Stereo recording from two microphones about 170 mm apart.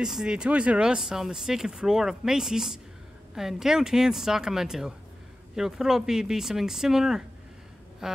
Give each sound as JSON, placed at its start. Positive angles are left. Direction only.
{"t": 0.0, "sound": "speech", "side_deg": -5}